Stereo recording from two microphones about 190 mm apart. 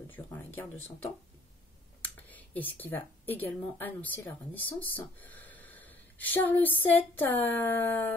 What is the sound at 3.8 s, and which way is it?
A woman's voice, 10° left (ahead or behind).